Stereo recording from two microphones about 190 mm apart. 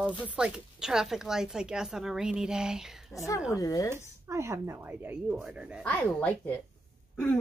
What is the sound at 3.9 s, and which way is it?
Speech, 15° right (ahead or behind).